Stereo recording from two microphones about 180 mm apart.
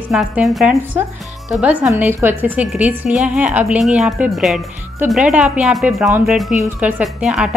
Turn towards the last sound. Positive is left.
turn(degrees=-5)  # may be behind; listen again after turning